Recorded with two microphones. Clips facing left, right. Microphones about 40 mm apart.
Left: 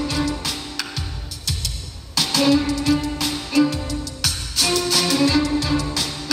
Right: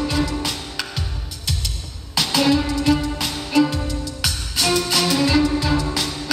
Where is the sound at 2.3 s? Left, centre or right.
Centre.